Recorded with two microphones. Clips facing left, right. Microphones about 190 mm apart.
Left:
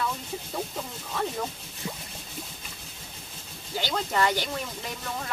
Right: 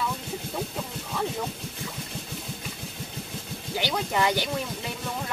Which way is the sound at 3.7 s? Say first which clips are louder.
Right 1 dB; 15° right (ahead or behind).